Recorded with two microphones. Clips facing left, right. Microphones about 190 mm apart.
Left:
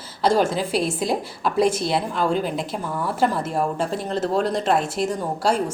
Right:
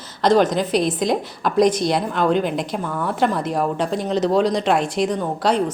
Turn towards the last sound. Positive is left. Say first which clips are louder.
# right 2 dB
turn(degrees=5)  # may be behind; listen again after turning